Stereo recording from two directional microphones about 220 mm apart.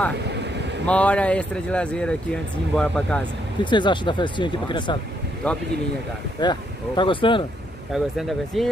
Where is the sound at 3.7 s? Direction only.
20° left (ahead or behind).